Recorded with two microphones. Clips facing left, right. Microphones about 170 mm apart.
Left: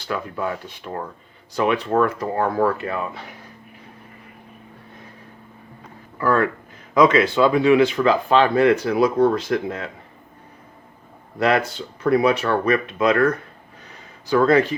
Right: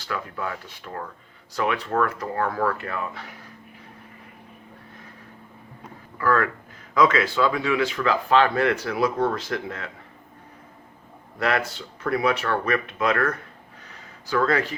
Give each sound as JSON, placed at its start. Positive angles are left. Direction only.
{"t": 0.1, "sound": "speech", "side_deg": 20}
{"t": 6.1, "sound": "speech", "side_deg": 25}
{"t": 11.3, "sound": "speech", "side_deg": 20}
{"t": 14.3, "sound": "speech", "side_deg": 20}